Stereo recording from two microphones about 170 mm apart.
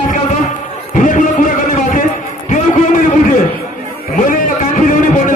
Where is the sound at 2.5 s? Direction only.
50° left (ahead or behind).